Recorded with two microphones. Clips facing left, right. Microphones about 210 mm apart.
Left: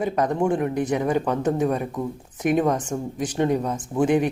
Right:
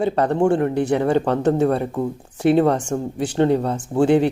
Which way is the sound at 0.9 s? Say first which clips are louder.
Right 4 dB; 30° right (ahead or behind).